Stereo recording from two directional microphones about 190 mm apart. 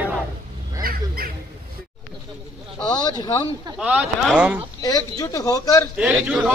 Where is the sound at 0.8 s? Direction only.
50° right (ahead or behind).